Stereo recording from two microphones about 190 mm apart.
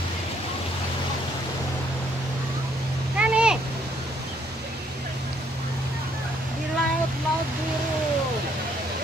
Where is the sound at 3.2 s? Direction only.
5° right (ahead or behind).